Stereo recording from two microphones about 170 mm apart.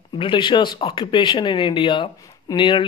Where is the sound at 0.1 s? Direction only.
30° left (ahead or behind).